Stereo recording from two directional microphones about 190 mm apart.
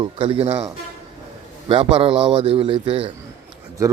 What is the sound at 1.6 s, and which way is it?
Speech, 25° right (ahead or behind).